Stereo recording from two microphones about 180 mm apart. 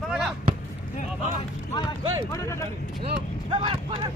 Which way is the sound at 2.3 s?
15° left (ahead or behind).